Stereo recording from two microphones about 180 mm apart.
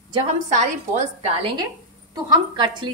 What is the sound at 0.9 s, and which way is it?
A woman's voice, 40° right (ahead or behind).